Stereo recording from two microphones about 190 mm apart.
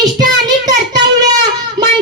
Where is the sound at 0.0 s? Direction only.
20° right (ahead or behind).